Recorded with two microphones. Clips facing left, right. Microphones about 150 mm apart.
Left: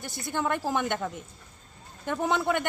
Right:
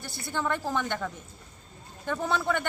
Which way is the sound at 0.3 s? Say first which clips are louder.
Left 1 dB; 15° left (ahead or behind).